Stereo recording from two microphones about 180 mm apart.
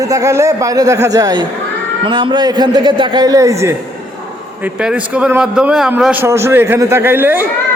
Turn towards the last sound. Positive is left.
turn(degrees=-10)  # may be behind; listen again after turning